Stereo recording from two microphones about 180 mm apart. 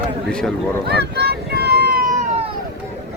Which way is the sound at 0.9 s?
65° right (ahead or behind).